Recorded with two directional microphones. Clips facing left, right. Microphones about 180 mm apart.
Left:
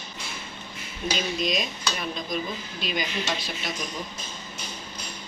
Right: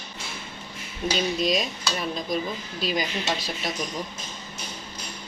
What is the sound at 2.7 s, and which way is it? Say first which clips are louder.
Speech: right 4 dB; 35° right (ahead or behind).